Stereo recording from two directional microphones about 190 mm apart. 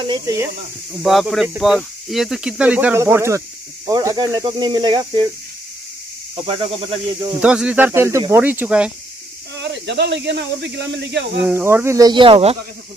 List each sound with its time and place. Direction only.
0.0 s speech: 20° right (ahead or behind)
1.0 s speech: centre (ahead or behind); by 5.3 s 25° right (ahead or behind)
6.4 s speech: 30° right (ahead or behind)
7.3 s speech: 5° right (ahead or behind)
9.6 s speech: 65° right (ahead or behind)
11.4 s speech: 10° right (ahead or behind); by 12.5 s 30° right (ahead or behind)